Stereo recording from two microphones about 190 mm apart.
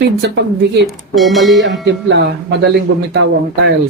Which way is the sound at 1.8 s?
70° right (ahead or behind).